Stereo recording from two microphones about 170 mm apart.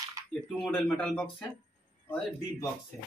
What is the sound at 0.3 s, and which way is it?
Speech, centre (ahead or behind).